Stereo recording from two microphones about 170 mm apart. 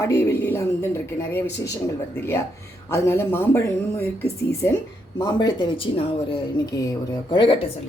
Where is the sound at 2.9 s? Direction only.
15° left (ahead or behind).